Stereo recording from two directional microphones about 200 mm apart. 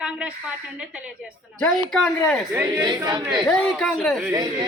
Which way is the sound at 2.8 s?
20° right (ahead or behind).